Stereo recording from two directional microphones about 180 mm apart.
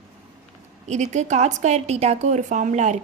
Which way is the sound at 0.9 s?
40° right (ahead or behind).